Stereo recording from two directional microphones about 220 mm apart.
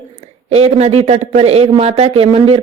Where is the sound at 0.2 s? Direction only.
30° right (ahead or behind).